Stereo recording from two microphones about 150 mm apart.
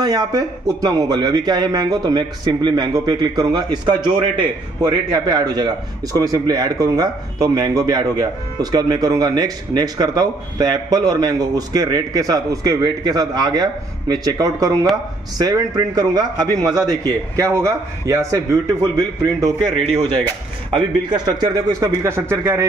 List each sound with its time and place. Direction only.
0.0 s speech: 25° right (ahead or behind)
20.7 s speech: 30° right (ahead or behind)